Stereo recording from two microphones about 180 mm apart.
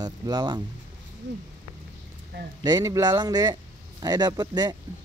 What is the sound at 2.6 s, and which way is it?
Speech, 20° right (ahead or behind).